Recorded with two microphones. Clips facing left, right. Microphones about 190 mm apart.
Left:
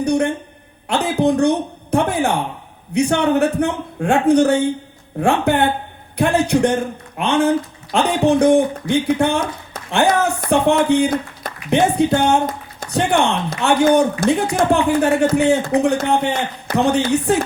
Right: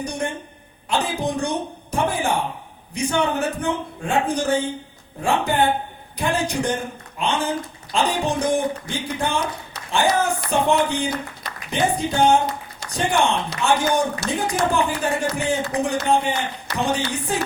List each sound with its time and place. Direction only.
0.0 s speech: 65° left (ahead or behind)